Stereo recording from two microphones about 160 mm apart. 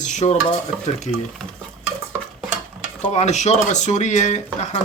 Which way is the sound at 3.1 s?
45° left (ahead or behind).